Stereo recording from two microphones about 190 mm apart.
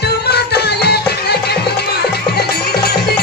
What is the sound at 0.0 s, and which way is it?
Music, 55° left (ahead or behind).